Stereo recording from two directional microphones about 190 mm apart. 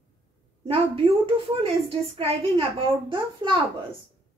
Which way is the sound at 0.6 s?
30° right (ahead or behind).